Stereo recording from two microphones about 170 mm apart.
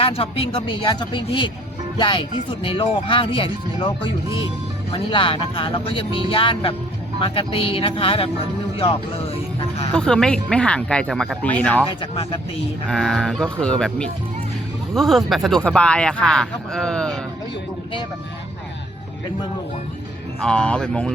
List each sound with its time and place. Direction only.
0.0 s speech: 35° left (ahead or behind)
9.9 s speech: 5° left (ahead or behind)
11.9 s speech: 30° left (ahead or behind)
12.9 s speech: 5° left (ahead or behind)
20.4 s speech: 5° left (ahead or behind)